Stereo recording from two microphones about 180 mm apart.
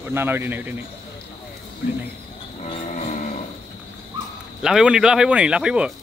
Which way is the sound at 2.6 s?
40° left (ahead or behind).